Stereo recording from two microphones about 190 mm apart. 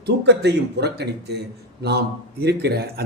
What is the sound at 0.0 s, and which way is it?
A man's voice, 65° right (ahead or behind).